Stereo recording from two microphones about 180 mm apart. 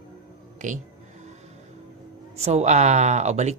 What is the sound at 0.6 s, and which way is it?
Speech, 45° right (ahead or behind).